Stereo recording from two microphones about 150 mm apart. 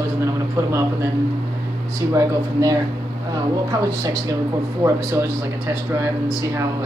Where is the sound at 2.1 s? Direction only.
20° right (ahead or behind).